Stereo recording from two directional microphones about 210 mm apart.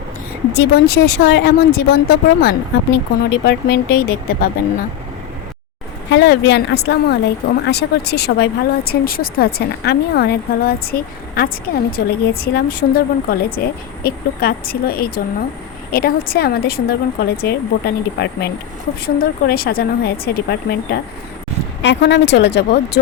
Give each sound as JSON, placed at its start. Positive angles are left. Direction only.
{"t": 0.5, "sound": "speech", "side_deg": 50}
{"t": 6.1, "sound": "speech", "side_deg": 55}